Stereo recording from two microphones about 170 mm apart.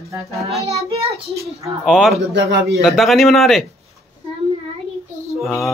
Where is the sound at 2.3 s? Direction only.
90° right.